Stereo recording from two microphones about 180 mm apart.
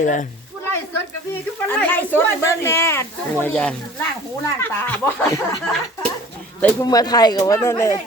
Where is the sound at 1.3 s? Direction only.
10° left (ahead or behind).